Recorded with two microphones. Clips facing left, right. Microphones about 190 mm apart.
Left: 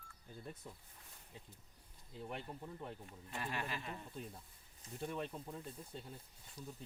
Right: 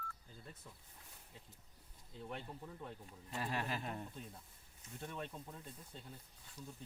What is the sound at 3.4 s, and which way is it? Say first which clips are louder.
Speech: right 2 dB; 35° right (ahead or behind).